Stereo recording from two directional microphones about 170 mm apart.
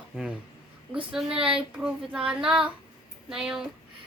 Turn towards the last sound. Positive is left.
turn(degrees=-5)  # may be behind; listen again after turning